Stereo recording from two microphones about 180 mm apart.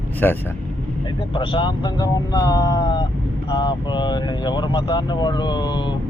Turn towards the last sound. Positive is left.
turn(degrees=25)  # may be behind; listen again after turning